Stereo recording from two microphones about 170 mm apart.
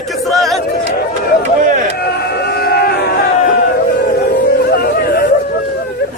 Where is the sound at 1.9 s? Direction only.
65° left (ahead or behind).